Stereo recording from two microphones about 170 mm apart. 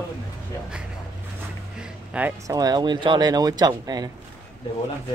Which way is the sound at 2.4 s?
20° right (ahead or behind).